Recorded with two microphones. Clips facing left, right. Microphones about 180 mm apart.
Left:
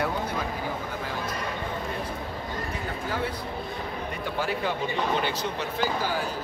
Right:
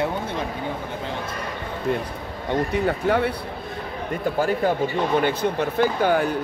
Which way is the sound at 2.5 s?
70° right (ahead or behind).